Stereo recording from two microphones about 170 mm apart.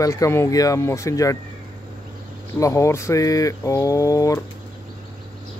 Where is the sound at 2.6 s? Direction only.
20° left (ahead or behind).